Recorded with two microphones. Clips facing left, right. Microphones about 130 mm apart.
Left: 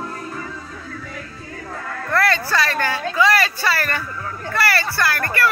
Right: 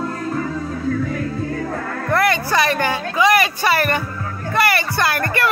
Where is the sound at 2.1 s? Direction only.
15° right (ahead or behind).